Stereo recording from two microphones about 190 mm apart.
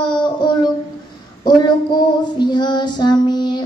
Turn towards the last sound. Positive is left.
turn(degrees=25)  # may be behind; listen again after turning